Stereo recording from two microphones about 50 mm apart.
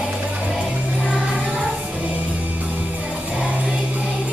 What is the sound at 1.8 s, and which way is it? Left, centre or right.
Music, right.